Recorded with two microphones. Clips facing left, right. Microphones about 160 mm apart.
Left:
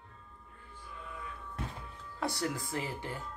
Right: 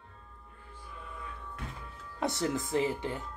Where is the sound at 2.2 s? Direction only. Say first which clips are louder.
Right 4 dB; 20° right (ahead or behind).